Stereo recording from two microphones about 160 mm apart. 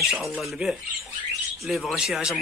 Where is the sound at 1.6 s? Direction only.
Centre (ahead or behind).